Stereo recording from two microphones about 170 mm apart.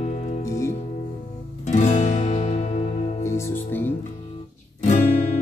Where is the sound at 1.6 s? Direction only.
45° left (ahead or behind).